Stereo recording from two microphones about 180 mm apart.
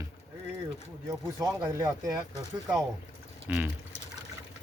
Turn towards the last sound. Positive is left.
turn(degrees=-5)  # may be behind; listen again after turning